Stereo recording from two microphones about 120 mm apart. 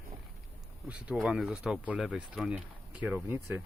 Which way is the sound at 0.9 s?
10° right (ahead or behind).